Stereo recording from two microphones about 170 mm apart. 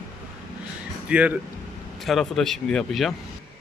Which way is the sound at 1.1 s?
5° right (ahead or behind).